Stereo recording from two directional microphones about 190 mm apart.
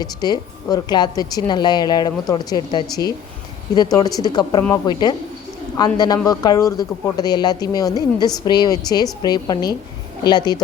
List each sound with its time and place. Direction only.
0.0 s a woman's voice: 20° left (ahead or behind)